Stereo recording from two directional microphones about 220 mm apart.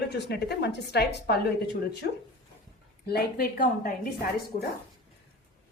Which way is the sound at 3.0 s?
45° left (ahead or behind).